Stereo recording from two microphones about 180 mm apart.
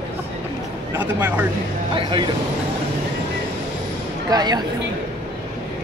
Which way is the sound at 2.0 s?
25° right (ahead or behind).